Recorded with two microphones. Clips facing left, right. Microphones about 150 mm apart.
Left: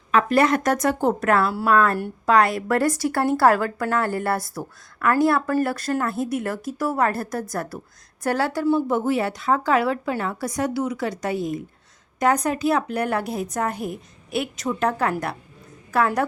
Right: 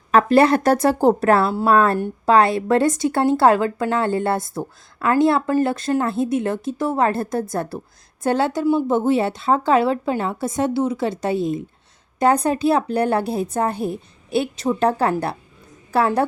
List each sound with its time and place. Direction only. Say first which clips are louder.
0.1 s speech: right 4 dB; 30° right (ahead or behind)